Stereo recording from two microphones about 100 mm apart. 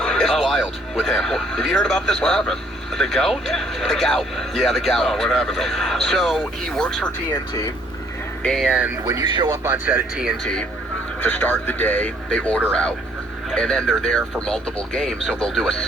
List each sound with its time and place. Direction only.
0.0 s speech: 5° left (ahead or behind)
8.4 s speech: centre (ahead or behind)
9.3 s speech: 45° right (ahead or behind)
10.4 s speech: 10° left (ahead or behind)
11.2 s speech: 20° left (ahead or behind)